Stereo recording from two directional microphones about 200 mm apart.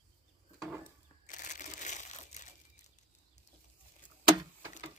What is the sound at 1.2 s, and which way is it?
Crushing, 40° left (ahead or behind).